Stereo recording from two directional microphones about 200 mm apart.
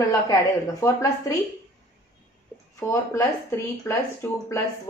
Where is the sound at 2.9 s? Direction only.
15° left (ahead or behind).